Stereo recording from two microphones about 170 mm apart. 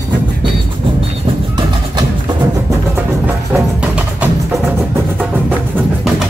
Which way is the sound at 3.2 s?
10° right (ahead or behind).